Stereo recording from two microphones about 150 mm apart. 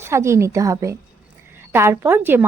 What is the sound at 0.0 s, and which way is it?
A woman's voice, 20° right (ahead or behind).